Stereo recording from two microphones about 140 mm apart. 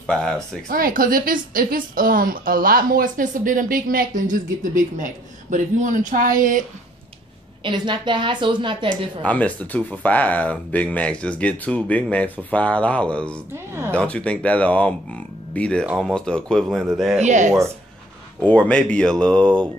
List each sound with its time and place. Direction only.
0.0 s speech: 5° left (ahead or behind)
0.7 s a woman's voice: 90° right
7.6 s a woman's voice: 35° right (ahead or behind)
9.2 s speech: 10° left (ahead or behind)
13.5 s speech: 15° right (ahead or behind)
13.9 s speech: 10° left (ahead or behind)
17.2 s speech: 60° right (ahead or behind)
18.4 s speech: 10° left (ahead or behind)